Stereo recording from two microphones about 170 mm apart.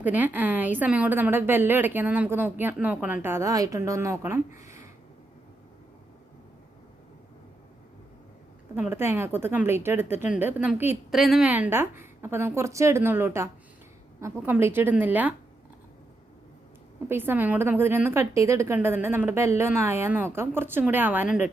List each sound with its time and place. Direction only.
0.0 s a woman's voice: 10° right (ahead or behind)
8.7 s a woman's voice: 15° right (ahead or behind)
17.1 s a woman's voice: 15° right (ahead or behind)